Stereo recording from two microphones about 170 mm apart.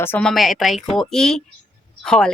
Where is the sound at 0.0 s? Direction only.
10° left (ahead or behind).